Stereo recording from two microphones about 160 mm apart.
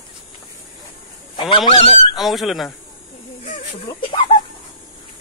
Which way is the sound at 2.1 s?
Centre (ahead or behind).